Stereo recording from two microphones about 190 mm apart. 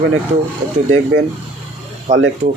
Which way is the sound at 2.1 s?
40° right (ahead or behind).